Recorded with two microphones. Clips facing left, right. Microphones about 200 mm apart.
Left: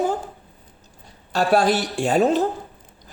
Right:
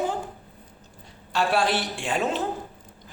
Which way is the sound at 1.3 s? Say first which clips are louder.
Left 5 dB; 40° left (ahead or behind).